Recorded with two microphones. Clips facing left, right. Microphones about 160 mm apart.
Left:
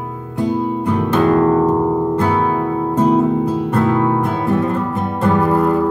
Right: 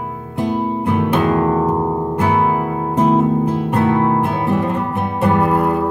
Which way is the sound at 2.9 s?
10° right (ahead or behind).